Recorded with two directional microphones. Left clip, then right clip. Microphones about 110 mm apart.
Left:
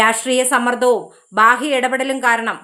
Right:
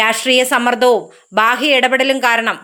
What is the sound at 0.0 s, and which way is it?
A woman's voice, 10° right (ahead or behind).